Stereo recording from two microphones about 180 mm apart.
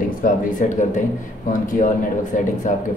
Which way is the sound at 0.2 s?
45° left (ahead or behind).